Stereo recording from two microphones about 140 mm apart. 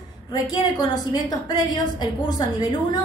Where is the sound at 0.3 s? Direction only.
30° left (ahead or behind).